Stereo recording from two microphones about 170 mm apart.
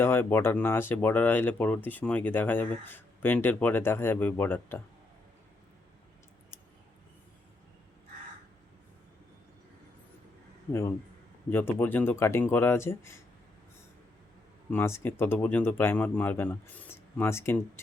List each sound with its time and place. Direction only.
0.0 s speech: 15° left (ahead or behind)
10.7 s speech: 15° left (ahead or behind)
14.7 s speech: 15° left (ahead or behind)